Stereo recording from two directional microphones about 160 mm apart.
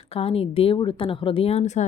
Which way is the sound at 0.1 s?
35° left (ahead or behind).